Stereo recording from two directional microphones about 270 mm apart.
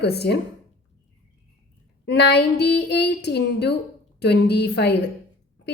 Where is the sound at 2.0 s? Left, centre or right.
Left.